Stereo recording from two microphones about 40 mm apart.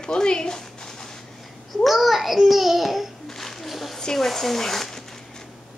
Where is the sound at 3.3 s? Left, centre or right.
Centre.